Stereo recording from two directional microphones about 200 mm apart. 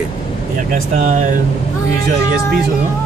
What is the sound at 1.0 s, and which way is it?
Speech, 40° right (ahead or behind).